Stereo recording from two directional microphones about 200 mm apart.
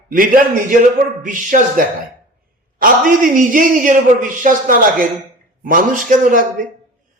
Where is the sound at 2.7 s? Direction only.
45° right (ahead or behind).